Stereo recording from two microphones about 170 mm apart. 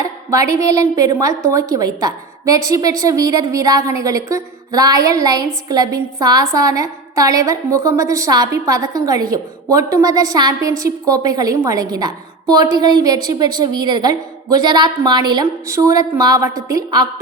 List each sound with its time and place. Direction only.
0.3 s a woman's voice: 20° right (ahead or behind)